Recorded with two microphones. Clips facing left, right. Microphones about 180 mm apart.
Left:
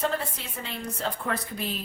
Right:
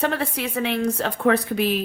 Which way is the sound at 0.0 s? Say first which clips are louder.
Right 5 dB; 75° right (ahead or behind).